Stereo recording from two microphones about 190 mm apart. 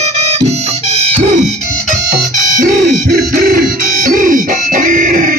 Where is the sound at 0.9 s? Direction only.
35° right (ahead or behind).